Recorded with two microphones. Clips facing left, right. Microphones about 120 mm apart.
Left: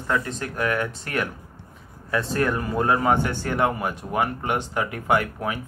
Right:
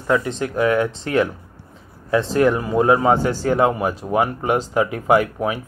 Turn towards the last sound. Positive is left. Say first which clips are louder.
# right 6 dB
turn(degrees=-20)  # may be behind; listen again after turning